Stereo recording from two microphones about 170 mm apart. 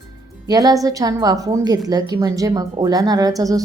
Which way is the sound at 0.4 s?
20° right (ahead or behind).